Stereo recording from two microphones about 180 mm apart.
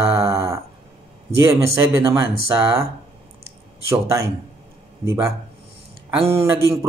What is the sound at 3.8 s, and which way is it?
Speech, 15° right (ahead or behind).